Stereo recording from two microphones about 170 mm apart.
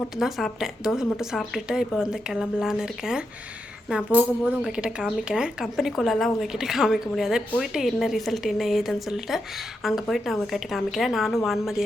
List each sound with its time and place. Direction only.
0.2 s speech: centre (ahead or behind)